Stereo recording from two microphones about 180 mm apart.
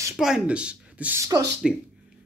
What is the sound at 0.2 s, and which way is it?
Speech, 5° right (ahead or behind).